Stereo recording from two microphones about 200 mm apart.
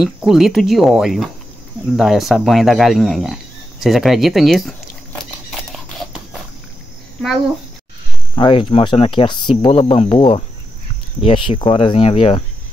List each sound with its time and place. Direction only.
0.0 s speech: centre (ahead or behind)
3.8 s a sound: centre (ahead or behind)
8.4 s speech: 25° left (ahead or behind)